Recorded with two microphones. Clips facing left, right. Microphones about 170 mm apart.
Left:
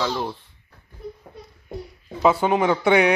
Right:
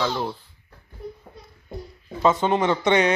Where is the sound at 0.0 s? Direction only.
Centre (ahead or behind).